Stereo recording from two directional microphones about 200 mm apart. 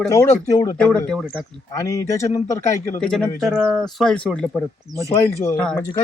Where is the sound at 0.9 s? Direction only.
5° left (ahead or behind).